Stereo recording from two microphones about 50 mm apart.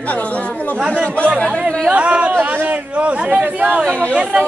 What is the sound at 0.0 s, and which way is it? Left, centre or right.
Chatter, left.